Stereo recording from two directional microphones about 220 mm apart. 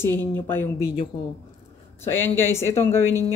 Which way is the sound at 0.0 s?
10° left (ahead or behind).